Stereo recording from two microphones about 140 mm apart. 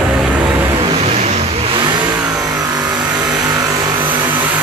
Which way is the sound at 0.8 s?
40° right (ahead or behind).